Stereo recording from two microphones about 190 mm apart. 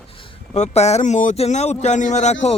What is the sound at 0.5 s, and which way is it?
A man's voice, 35° left (ahead or behind).